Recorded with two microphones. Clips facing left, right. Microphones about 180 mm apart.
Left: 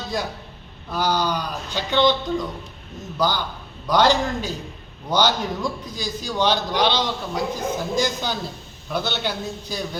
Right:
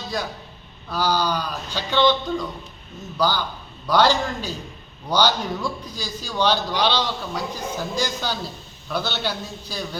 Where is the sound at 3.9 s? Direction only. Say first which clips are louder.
Left 1 dB; 15° left (ahead or behind).